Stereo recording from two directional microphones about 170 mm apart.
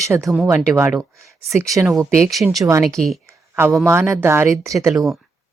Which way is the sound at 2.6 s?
20° right (ahead or behind).